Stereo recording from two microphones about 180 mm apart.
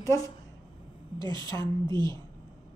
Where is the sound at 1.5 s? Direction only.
15° left (ahead or behind).